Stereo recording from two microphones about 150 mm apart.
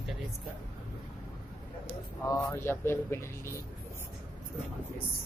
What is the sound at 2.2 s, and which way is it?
Speech, 25° left (ahead or behind).